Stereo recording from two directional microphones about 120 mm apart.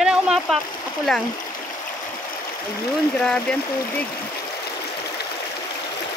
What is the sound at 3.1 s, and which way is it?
Speech, 10° left (ahead or behind).